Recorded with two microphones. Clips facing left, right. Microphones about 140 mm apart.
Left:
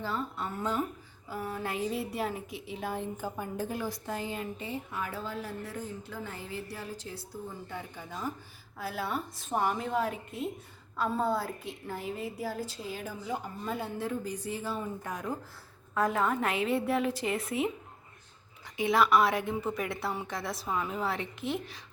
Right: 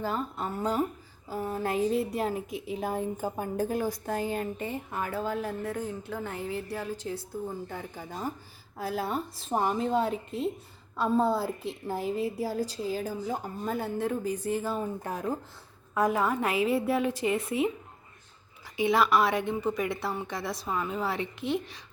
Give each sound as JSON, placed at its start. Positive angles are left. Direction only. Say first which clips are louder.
{"t": 0.0, "sound": "a woman's voice", "louder": "right 3 dB", "side_deg": -45}
{"t": 7.7, "sound": "a woman's voice", "louder": "right 2 dB", "side_deg": -40}
{"t": 9.5, "sound": "a woman's voice", "louder": "right 3 dB", "side_deg": -30}
{"t": 16.0, "sound": "a woman's voice", "louder": "right 2 dB", "side_deg": -5}
{"t": 18.8, "sound": "a woman's voice", "louder": "right 1 dB", "side_deg": 0}